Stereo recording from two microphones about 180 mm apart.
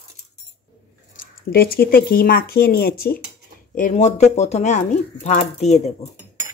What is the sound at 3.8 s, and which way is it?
Speech, 45° left (ahead or behind).